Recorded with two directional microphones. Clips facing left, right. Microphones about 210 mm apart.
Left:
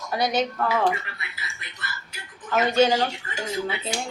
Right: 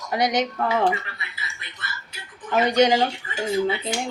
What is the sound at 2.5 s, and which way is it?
Speech, 20° right (ahead or behind).